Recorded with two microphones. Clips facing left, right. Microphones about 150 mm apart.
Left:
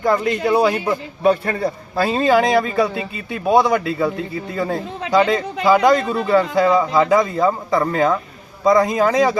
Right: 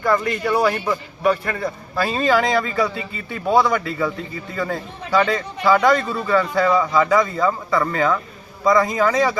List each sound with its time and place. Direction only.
0.0 s a man's voice: 20° left (ahead or behind)
5.1 s a man's voice: 15° left (ahead or behind)